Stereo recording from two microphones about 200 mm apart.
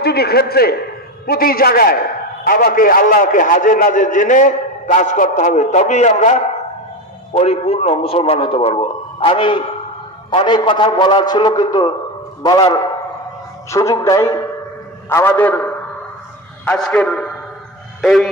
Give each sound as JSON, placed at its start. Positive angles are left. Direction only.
{"t": 0.0, "sound": "a man's voice", "side_deg": 50}